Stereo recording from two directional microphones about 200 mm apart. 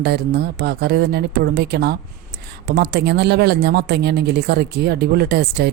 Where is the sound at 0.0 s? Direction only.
55° right (ahead or behind).